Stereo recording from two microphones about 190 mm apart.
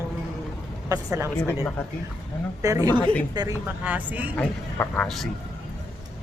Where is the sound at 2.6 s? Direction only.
20° right (ahead or behind).